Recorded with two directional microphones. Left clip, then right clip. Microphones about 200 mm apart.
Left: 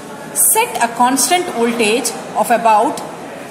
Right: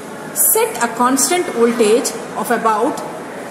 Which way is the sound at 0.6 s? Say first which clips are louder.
Left 2 dB; 15° left (ahead or behind).